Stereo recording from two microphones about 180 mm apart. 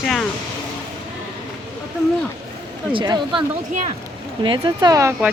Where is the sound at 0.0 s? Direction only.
Centre (ahead or behind).